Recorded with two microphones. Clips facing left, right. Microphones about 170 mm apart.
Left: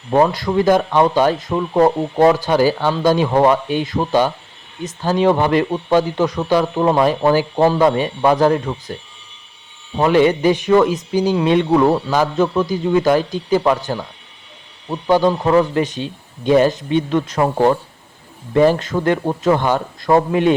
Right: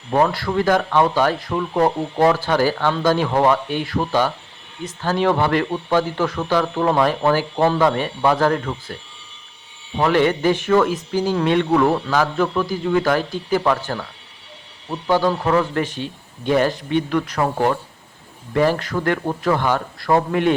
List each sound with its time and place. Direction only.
0.1 s speech: 20° left (ahead or behind)
10.0 s speech: 20° left (ahead or behind)